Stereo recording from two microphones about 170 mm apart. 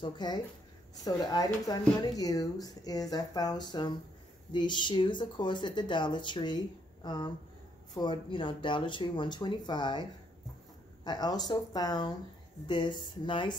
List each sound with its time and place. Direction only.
0.0 s speech: 25° left (ahead or behind)
11.1 s speech: 25° left (ahead or behind)